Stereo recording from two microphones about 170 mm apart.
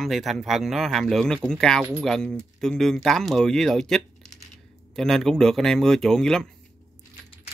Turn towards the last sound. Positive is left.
turn(degrees=5)  # may be behind; listen again after turning